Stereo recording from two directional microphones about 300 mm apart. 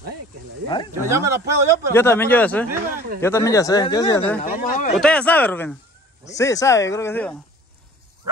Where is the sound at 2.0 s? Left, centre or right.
Centre.